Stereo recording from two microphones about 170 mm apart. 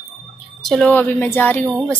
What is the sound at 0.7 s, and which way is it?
A woman's voice, 5° left (ahead or behind).